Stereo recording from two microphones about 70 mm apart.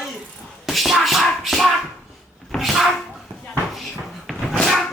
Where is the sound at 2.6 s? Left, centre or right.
Centre.